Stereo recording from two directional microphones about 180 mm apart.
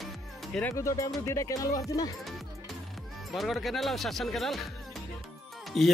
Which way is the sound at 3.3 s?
Centre (ahead or behind).